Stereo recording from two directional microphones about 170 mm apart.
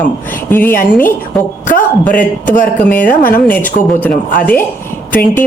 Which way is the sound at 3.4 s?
10° left (ahead or behind).